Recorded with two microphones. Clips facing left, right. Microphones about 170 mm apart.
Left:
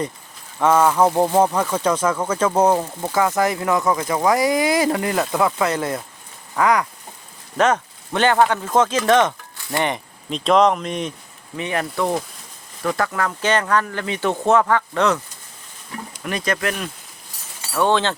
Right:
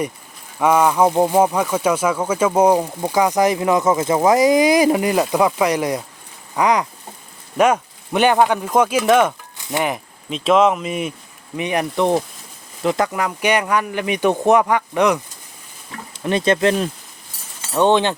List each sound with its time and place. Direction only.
0.6 s speech: 10° right (ahead or behind)
11.5 s speech: 15° right (ahead or behind)
16.1 s speech: 25° right (ahead or behind)